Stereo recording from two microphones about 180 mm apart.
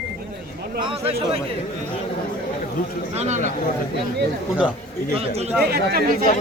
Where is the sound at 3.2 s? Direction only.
40° right (ahead or behind).